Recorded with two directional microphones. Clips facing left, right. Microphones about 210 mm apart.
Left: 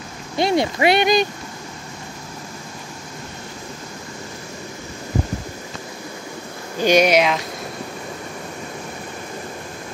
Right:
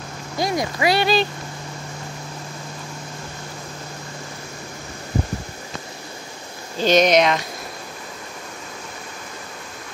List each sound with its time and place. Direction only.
0.4 s speech: 25° left (ahead or behind)
6.8 s speech: 10° left (ahead or behind)